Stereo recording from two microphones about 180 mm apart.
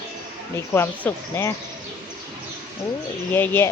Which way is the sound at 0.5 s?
15° left (ahead or behind).